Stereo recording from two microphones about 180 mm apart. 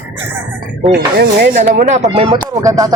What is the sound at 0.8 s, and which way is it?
Speech, centre (ahead or behind).